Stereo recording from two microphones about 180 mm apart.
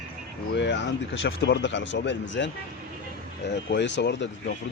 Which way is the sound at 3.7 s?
75° left (ahead or behind).